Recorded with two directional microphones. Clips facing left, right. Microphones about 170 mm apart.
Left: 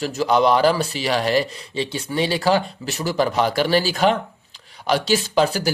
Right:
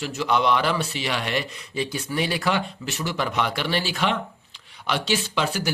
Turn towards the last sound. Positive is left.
turn(degrees=40)  # may be behind; listen again after turning